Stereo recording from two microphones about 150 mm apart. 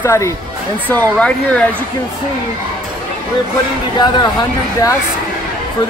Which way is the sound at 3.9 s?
30° left (ahead or behind).